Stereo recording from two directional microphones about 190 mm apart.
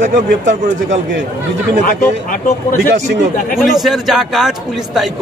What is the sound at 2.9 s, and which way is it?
Speech, 70° right (ahead or behind).